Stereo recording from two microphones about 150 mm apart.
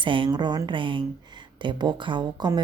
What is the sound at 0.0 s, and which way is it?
Speech, 35° right (ahead or behind).